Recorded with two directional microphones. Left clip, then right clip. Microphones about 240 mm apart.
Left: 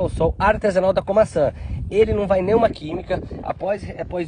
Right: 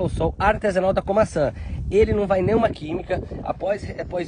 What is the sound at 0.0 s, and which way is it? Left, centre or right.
Speech, centre.